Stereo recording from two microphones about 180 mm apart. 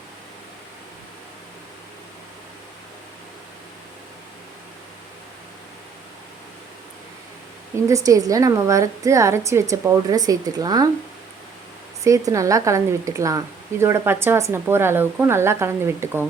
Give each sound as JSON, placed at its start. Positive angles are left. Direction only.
{"t": 7.9, "sound": "speech", "side_deg": -20}
{"t": 12.0, "sound": "speech", "side_deg": -20}